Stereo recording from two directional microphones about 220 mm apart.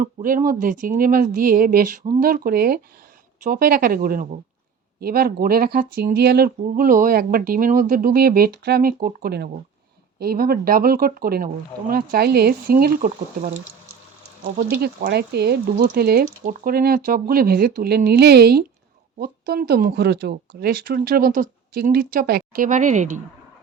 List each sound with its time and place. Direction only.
0.0 s speech: 40° right (ahead or behind)
14.6 s speech: 40° right (ahead or behind)